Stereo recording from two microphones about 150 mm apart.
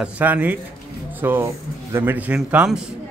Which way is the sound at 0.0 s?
10° right (ahead or behind).